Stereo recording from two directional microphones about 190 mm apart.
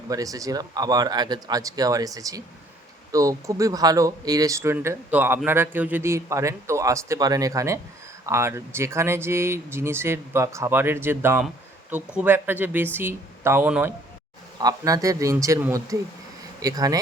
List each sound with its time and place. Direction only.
0.1 s speech: 20° right (ahead or behind)
14.6 s speech: 20° right (ahead or behind)